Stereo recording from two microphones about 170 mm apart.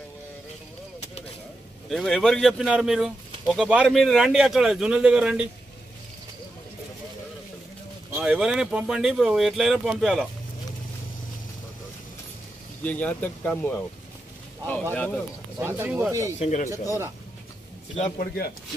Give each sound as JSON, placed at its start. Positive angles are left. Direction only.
{"t": 1.0, "sound": "a sound", "side_deg": 40}
{"t": 1.9, "sound": "a man's voice", "side_deg": 0}
{"t": 8.2, "sound": "a man's voice", "side_deg": -5}
{"t": 12.8, "sound": "speech", "side_deg": 10}
{"t": 15.0, "sound": "speech", "side_deg": 10}
{"t": 15.6, "sound": "speech", "side_deg": -10}
{"t": 16.3, "sound": "speech", "side_deg": 45}
{"t": 17.9, "sound": "speech", "side_deg": 40}